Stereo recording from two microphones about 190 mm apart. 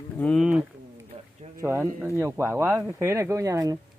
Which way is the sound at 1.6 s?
15° right (ahead or behind).